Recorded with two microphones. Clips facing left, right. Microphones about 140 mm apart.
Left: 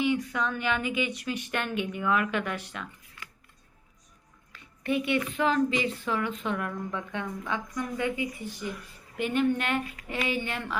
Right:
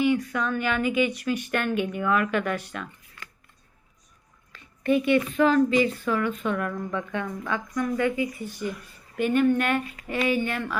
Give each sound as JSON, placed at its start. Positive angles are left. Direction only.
{"t": 0.0, "sound": "speech", "side_deg": 20}
{"t": 0.8, "sound": "speech", "side_deg": -45}
{"t": 1.1, "sound": "a woman's voice", "side_deg": 20}
{"t": 4.5, "sound": "a woman's voice", "side_deg": 15}